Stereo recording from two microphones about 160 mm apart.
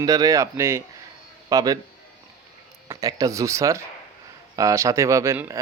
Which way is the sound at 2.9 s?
20° right (ahead or behind).